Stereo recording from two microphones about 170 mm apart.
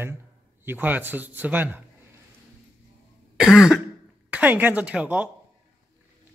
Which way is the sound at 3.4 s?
Centre (ahead or behind).